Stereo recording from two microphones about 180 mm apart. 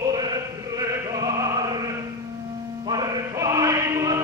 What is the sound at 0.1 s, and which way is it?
Music, 20° right (ahead or behind).